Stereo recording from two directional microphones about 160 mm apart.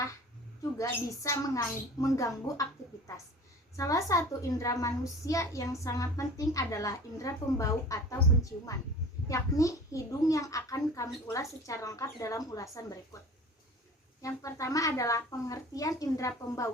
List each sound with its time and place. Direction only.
0.8 s a child's voice: 20° left (ahead or behind)
3.8 s a child's voice: 20° left (ahead or behind)
9.2 s a child's voice: 20° left (ahead or behind)
14.2 s a child's voice: 20° left (ahead or behind)